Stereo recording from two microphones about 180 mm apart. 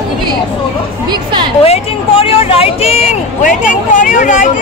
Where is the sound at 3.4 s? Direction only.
45° left (ahead or behind).